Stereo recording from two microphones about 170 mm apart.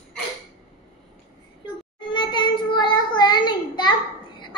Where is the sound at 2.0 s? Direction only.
25° left (ahead or behind).